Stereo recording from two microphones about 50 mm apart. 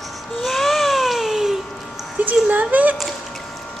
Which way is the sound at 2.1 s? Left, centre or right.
Right.